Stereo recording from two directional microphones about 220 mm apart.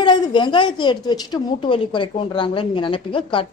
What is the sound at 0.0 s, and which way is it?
A woman's voice, 20° left (ahead or behind).